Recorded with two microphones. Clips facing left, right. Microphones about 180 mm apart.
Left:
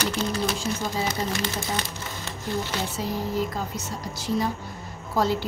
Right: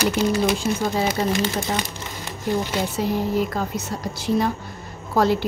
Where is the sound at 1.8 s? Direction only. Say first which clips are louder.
Right 3 dB; 15° right (ahead or behind).